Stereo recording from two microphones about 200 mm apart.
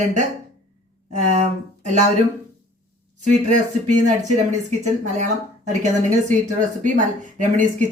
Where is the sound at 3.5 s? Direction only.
40° right (ahead or behind).